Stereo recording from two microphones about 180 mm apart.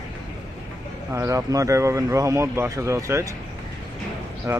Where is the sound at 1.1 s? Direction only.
15° right (ahead or behind).